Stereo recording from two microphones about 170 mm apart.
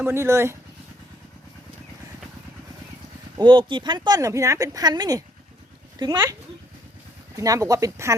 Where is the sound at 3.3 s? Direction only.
30° right (ahead or behind).